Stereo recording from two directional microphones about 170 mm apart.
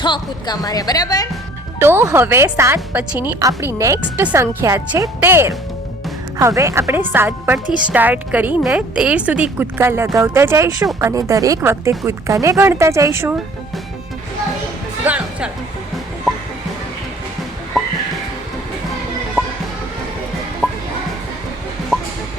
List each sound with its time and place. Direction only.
0.0 s a woman's voice: 25° left (ahead or behind)
1.8 s speech: 15° right (ahead or behind)
15.0 s speech: 10° right (ahead or behind)
20.6 s music: 5° left (ahead or behind)